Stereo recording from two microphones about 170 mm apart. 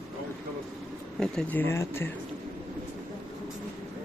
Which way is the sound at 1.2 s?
5° left (ahead or behind).